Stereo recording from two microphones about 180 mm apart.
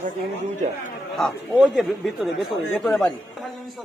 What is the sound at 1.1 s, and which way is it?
A man's voice, centre (ahead or behind).